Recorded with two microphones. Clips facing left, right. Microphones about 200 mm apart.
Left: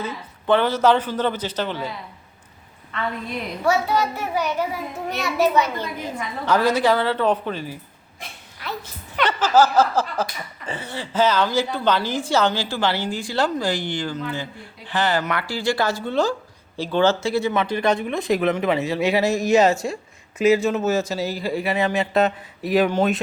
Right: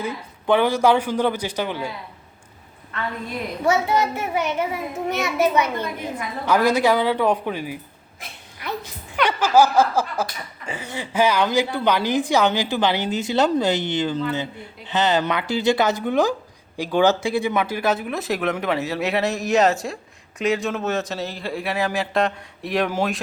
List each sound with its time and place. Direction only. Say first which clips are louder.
0.0 s a woman's voice: right 2 dB; 10° right (ahead or behind)
3.6 s a child's voice: right 1 dB; 20° right (ahead or behind)
6.4 s a woman's voice: right 1 dB; 10° right (ahead or behind)
9.2 s chuckle: right 1 dB; 10° right (ahead or behind)
10.7 s a woman's voice: even; 15° right (ahead or behind)